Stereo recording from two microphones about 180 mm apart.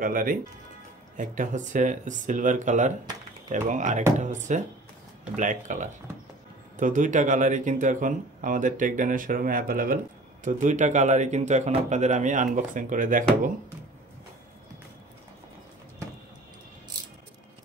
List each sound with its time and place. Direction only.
0.0 s a man's voice: 50° right (ahead or behind)